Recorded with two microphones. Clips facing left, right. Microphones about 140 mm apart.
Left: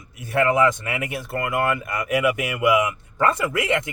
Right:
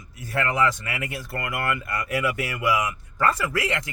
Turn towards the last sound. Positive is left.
turn(degrees=25)  # may be behind; listen again after turning